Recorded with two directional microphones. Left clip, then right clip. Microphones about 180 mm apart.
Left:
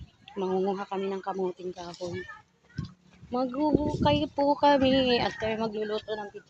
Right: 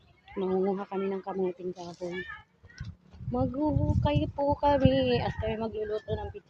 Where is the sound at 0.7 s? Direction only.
10° left (ahead or behind).